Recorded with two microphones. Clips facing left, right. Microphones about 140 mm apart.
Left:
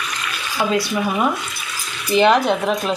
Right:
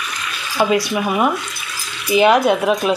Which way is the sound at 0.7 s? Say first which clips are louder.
Right 2 dB; 15° right (ahead or behind).